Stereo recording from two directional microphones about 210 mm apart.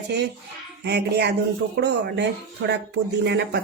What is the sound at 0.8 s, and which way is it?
A woman's voice, 55° right (ahead or behind).